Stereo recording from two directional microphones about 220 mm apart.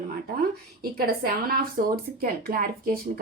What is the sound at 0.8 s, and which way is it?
Speech, 40° right (ahead or behind).